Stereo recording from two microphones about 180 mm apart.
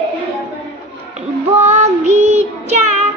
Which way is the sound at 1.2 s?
35° right (ahead or behind).